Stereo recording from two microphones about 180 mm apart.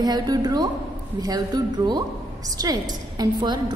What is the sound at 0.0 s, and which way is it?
A woman's voice, 20° right (ahead or behind).